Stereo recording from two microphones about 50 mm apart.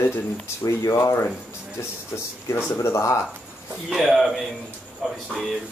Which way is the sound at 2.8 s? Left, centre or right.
Left.